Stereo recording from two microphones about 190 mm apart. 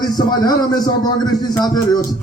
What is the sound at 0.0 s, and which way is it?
A man's voice, 20° left (ahead or behind).